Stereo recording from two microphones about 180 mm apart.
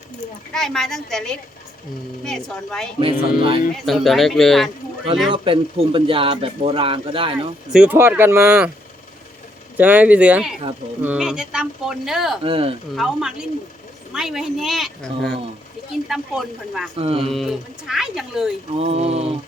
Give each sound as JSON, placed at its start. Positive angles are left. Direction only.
{"t": 0.5, "sound": "speech", "side_deg": 5}
{"t": 3.0, "sound": "music", "side_deg": -30}
{"t": 3.8, "sound": "speech", "side_deg": 0}
{"t": 5.3, "sound": "speech", "side_deg": -30}
{"t": 7.7, "sound": "speech", "side_deg": -5}
{"t": 9.7, "sound": "speech", "side_deg": -10}
{"t": 12.4, "sound": "speech", "side_deg": -30}
{"t": 13.0, "sound": "speech", "side_deg": -5}
{"t": 17.0, "sound": "speech", "side_deg": -35}
{"t": 17.2, "sound": "speech", "side_deg": 0}
{"t": 18.8, "sound": "speech", "side_deg": -35}